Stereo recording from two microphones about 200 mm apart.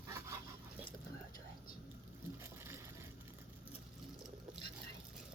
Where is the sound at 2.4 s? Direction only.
15° right (ahead or behind).